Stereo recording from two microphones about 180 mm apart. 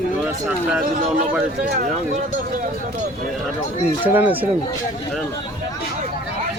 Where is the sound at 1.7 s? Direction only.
50° right (ahead or behind).